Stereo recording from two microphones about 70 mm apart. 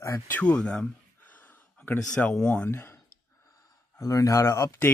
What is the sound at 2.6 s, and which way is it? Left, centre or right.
Speech, left.